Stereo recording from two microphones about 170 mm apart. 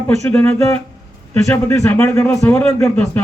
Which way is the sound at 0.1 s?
15° left (ahead or behind).